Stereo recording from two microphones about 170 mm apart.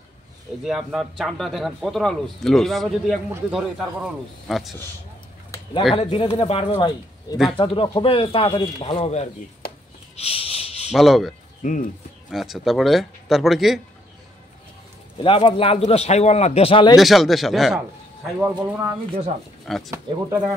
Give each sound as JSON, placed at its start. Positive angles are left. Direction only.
{"t": 0.7, "sound": "a man's voice", "side_deg": 0}
{"t": 5.9, "sound": "speech", "side_deg": 35}
{"t": 10.1, "sound": "a sound", "side_deg": 35}
{"t": 10.9, "sound": "a man's voice", "side_deg": 0}
{"t": 11.6, "sound": "speech", "side_deg": 50}
{"t": 12.3, "sound": "a man's voice", "side_deg": 0}
{"t": 15.2, "sound": "speech", "side_deg": 30}
{"t": 16.9, "sound": "a man's voice", "side_deg": 0}
{"t": 18.4, "sound": "speech", "side_deg": -15}
{"t": 19.6, "sound": "speech", "side_deg": 0}